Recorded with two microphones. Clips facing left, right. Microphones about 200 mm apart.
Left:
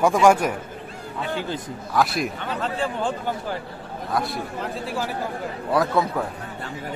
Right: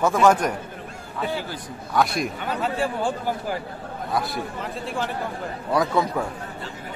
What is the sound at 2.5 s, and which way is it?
A man's voice, 10° right (ahead or behind).